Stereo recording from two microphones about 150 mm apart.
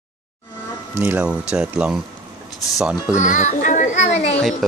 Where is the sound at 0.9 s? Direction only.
10° right (ahead or behind).